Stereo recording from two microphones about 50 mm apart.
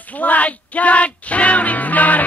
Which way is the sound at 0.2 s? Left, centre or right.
Left.